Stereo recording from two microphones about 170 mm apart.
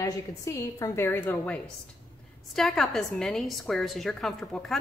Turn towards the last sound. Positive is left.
turn(degrees=0)  # may be behind; listen again after turning